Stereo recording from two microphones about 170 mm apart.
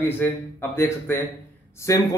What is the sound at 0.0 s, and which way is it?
A man's voice, 10° left (ahead or behind).